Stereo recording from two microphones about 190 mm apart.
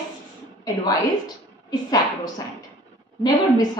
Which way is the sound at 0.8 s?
20° left (ahead or behind).